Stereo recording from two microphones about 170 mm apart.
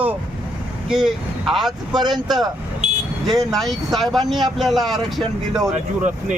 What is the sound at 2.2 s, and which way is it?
Speech, centre (ahead or behind).